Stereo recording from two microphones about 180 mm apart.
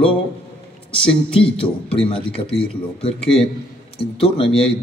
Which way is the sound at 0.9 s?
5° left (ahead or behind).